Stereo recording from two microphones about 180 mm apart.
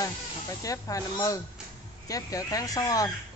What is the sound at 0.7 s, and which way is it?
Speech, 20° left (ahead or behind).